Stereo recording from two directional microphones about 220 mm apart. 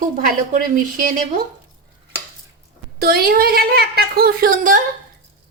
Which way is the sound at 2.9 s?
45° right (ahead or behind).